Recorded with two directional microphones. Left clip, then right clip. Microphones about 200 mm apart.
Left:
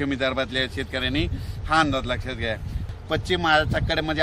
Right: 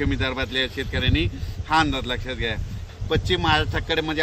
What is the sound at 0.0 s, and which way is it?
A man's voice, 30° left (ahead or behind).